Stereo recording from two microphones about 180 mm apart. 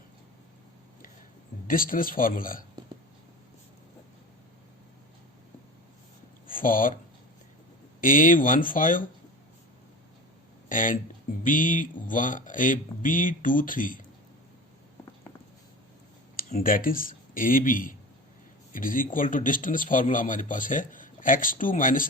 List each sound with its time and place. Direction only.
1.6 s speech: 50° left (ahead or behind)
6.5 s speech: 50° left (ahead or behind)
8.0 s speech: 50° left (ahead or behind)
10.7 s speech: 50° left (ahead or behind)
16.3 s speech: 55° left (ahead or behind)